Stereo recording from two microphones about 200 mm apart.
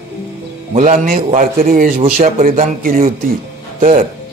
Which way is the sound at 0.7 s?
40° right (ahead or behind).